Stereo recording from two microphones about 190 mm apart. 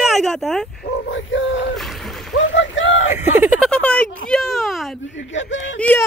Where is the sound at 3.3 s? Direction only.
10° right (ahead or behind).